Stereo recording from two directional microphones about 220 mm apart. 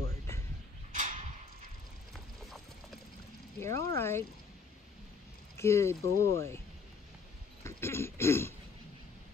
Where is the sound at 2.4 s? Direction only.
Centre (ahead or behind).